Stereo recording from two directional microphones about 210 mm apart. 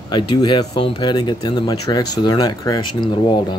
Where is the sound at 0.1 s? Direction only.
20° left (ahead or behind).